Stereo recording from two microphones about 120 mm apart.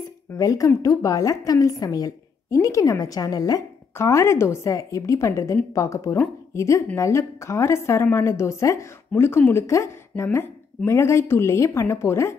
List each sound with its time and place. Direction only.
0.4 s a woman's voice: 30° left (ahead or behind)